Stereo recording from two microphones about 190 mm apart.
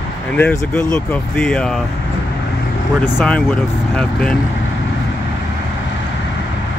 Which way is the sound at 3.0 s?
10° left (ahead or behind).